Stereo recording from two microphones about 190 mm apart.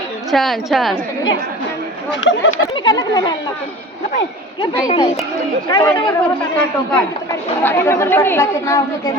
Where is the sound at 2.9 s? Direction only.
20° left (ahead or behind).